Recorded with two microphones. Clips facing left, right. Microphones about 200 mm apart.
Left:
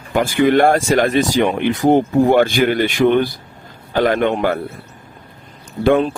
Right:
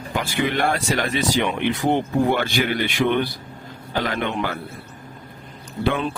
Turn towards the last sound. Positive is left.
turn(degrees=50)  # may be behind; listen again after turning